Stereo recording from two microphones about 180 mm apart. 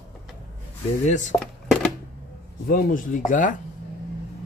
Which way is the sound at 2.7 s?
50° left (ahead or behind).